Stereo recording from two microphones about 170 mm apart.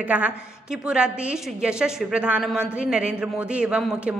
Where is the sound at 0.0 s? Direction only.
5° right (ahead or behind).